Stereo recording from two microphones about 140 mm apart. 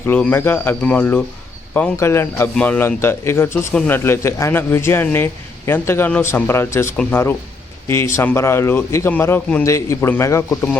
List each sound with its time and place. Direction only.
0.0 s speech: 15° left (ahead or behind)
6.9 s speech: 5° left (ahead or behind)
7.9 s a man's voice: 20° left (ahead or behind)